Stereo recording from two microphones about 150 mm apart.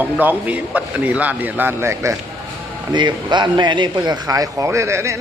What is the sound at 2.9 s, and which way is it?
A man's voice, 30° right (ahead or behind).